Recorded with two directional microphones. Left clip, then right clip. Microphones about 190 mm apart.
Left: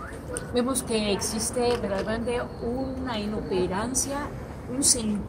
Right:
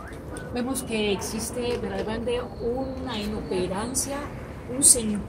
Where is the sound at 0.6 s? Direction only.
15° left (ahead or behind).